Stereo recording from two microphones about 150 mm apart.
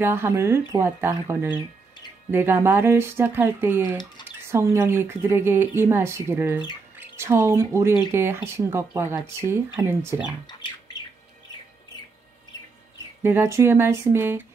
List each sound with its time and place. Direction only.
0.0 s speech: 15° right (ahead or behind)
10.4 s bird: 30° left (ahead or behind)
13.2 s speech: 15° right (ahead or behind)